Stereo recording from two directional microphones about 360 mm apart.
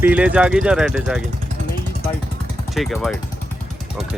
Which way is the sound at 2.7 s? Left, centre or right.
Centre.